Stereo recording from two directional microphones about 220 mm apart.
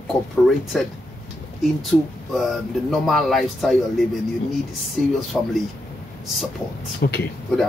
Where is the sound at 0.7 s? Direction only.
Centre (ahead or behind).